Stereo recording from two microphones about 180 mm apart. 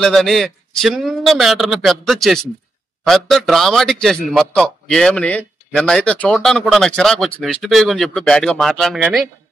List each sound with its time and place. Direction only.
0.0 s a man's voice: centre (ahead or behind)